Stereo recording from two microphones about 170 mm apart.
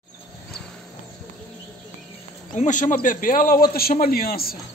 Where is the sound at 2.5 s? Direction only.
45° left (ahead or behind).